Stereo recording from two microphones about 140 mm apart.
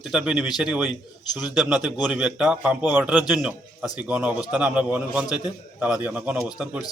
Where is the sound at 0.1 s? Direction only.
5° right (ahead or behind).